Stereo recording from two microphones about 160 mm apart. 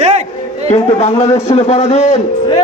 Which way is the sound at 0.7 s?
45° left (ahead or behind).